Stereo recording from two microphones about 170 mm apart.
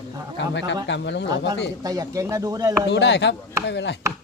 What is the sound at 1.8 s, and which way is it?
Speech, 20° right (ahead or behind).